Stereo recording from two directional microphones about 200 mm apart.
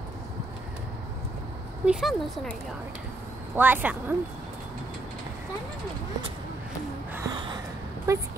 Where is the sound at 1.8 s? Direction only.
Centre (ahead or behind).